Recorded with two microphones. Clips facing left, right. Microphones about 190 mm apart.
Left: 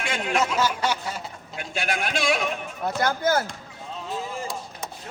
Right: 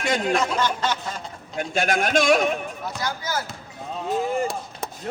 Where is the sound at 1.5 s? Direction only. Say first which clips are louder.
Right 6 dB; 45° right (ahead or behind).